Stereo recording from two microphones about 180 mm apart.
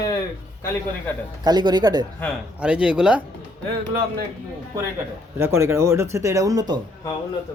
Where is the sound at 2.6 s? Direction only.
5° right (ahead or behind).